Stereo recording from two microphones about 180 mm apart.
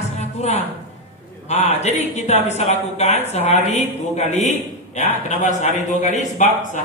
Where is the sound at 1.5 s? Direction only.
35° left (ahead or behind).